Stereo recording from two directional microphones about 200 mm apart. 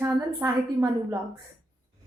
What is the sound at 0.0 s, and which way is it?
A woman's voice, 15° right (ahead or behind).